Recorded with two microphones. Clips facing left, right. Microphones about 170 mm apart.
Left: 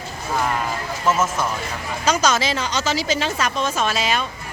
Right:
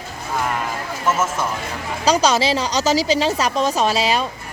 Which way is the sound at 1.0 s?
5° right (ahead or behind).